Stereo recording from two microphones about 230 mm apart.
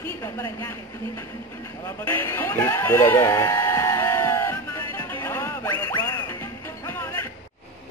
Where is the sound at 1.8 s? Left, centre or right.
Centre.